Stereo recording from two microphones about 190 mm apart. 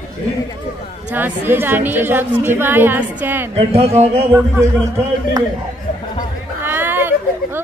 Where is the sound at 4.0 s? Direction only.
35° right (ahead or behind).